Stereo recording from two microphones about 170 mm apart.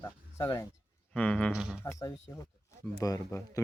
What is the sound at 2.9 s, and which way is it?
Speech, 20° left (ahead or behind).